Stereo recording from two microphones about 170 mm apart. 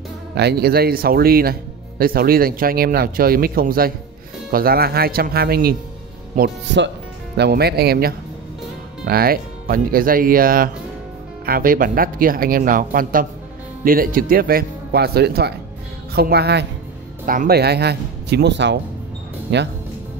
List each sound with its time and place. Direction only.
0.3 s speech: 75° right (ahead or behind)
6.3 s speech: 80° right
17.3 s speech: 60° right (ahead or behind); by 19.6 s 90° right